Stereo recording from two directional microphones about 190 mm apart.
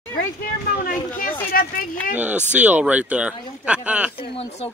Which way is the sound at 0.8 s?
45° left (ahead or behind).